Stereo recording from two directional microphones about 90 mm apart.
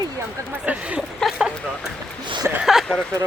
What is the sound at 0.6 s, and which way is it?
Speech, 15° right (ahead or behind).